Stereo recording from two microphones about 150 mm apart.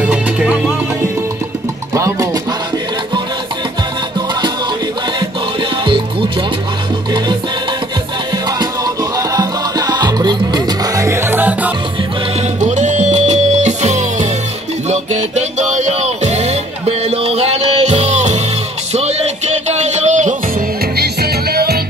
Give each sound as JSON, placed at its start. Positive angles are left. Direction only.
{"t": 0.0, "sound": "music", "side_deg": -10}
{"t": 2.0, "sound": "music", "side_deg": -20}
{"t": 9.3, "sound": "music", "side_deg": -25}
{"t": 11.1, "sound": "music", "side_deg": -15}
{"t": 12.5, "sound": "music", "side_deg": -55}
{"t": 21.0, "sound": "music", "side_deg": -90}